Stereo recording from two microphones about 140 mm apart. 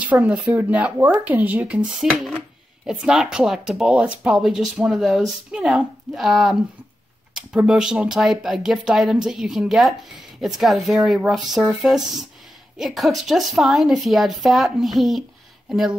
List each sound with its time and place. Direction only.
0.0 s speech: 10° right (ahead or behind)